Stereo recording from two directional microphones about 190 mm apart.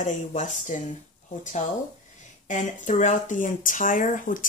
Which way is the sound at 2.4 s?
40° left (ahead or behind).